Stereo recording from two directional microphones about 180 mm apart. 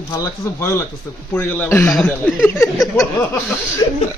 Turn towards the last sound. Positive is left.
turn(degrees=25)  # may be behind; listen again after turning